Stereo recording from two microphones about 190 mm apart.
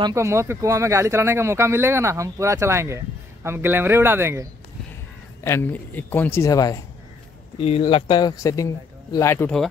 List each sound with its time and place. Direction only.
0.0 s speech: 15° right (ahead or behind)
5.4 s a man's voice: 10° left (ahead or behind)
7.5 s a man's voice: 30° left (ahead or behind); by 9.6 s 15° left (ahead or behind)